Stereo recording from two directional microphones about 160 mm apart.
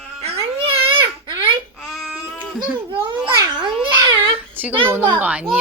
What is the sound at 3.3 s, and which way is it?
Babbling, 25° right (ahead or behind).